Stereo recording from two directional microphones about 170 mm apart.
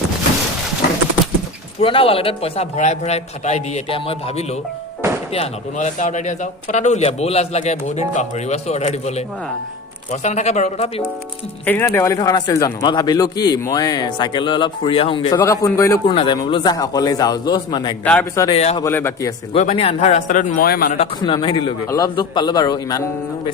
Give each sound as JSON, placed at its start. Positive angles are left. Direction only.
{"t": 1.8, "sound": "a man's voice", "side_deg": 35}
{"t": 11.6, "sound": "speech", "side_deg": 15}
{"t": 15.4, "sound": "a man's voice", "side_deg": 15}
{"t": 16.0, "sound": "speech", "side_deg": 30}
{"t": 18.0, "sound": "a man's voice", "side_deg": 10}
{"t": 18.4, "sound": "a man's voice", "side_deg": 35}
{"t": 18.8, "sound": "a man's voice", "side_deg": 15}
{"t": 19.5, "sound": "a man's voice", "side_deg": 40}
{"t": 21.2, "sound": "speech", "side_deg": 25}